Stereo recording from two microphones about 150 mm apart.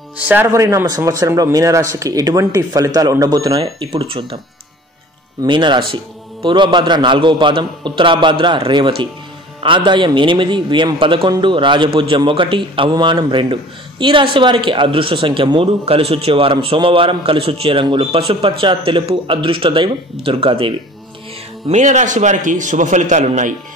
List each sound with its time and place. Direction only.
0.2 s speech: 10° right (ahead or behind)
3.6 s a man's voice: 40° right (ahead or behind)
5.4 s a man's voice: 30° right (ahead or behind)
21.6 s a man's voice: 50° right (ahead or behind)